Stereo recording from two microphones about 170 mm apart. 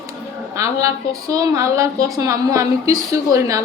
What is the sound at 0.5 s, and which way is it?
A woman's voice, 20° right (ahead or behind).